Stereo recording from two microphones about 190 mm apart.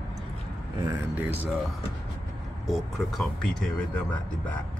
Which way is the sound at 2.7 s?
Centre (ahead or behind).